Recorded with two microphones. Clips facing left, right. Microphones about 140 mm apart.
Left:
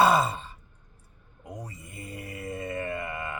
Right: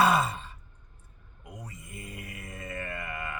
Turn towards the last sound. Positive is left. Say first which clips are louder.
# left 4 dB
turn(degrees=25)  # may be behind; listen again after turning